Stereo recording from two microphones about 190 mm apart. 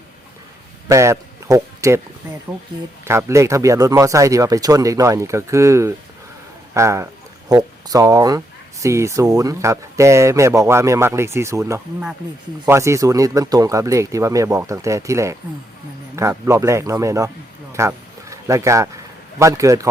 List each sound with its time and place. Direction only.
0.9 s speech: 15° right (ahead or behind)
3.0 s a man's voice: 15° right (ahead or behind)